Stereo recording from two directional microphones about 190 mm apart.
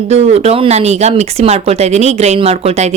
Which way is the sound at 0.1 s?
35° right (ahead or behind).